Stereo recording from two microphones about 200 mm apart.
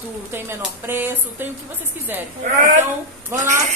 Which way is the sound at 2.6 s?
40° right (ahead or behind).